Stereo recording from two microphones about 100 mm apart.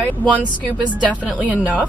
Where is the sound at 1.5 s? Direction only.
15° right (ahead or behind).